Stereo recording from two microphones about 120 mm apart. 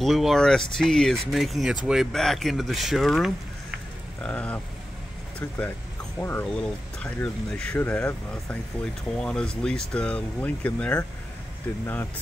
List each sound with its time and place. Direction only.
0.0 s speech: centre (ahead or behind)
4.2 s speech: 10° left (ahead or behind)
6.1 s speech: 15° left (ahead or behind)